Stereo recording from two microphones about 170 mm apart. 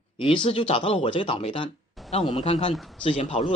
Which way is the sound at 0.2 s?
30° left (ahead or behind).